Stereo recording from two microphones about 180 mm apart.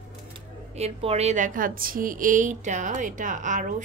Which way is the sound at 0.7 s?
35° right (ahead or behind).